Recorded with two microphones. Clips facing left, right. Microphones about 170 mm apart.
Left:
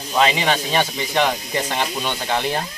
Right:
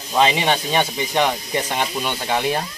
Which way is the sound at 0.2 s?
15° right (ahead or behind).